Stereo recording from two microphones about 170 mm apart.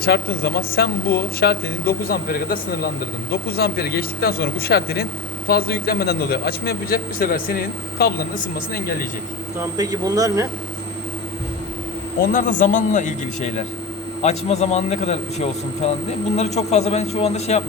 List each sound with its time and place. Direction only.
0.0 s speech: 65° left (ahead or behind)
9.6 s speech: 20° right (ahead or behind)
12.2 s a man's voice: 50° left (ahead or behind)